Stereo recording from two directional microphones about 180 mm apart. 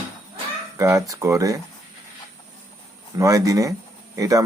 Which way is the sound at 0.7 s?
20° right (ahead or behind).